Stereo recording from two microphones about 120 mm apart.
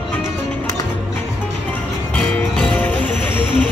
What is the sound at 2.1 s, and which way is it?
Music, 10° left (ahead or behind).